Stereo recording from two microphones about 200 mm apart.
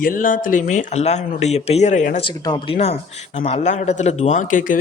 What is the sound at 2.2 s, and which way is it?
Speech, 25° left (ahead or behind).